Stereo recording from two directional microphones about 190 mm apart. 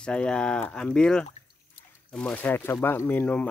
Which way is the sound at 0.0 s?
5° left (ahead or behind).